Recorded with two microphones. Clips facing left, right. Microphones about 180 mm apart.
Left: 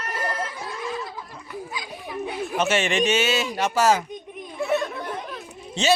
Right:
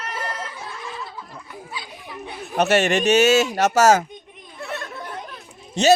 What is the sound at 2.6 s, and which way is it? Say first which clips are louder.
Speech: right 4 dB; 40° right (ahead or behind).